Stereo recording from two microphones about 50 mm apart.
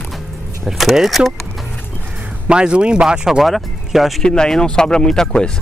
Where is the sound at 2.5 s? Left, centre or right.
Right.